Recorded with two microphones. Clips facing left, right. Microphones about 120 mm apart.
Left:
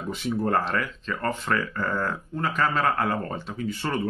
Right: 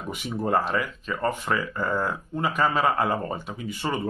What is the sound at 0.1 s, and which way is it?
Speech, 15° right (ahead or behind).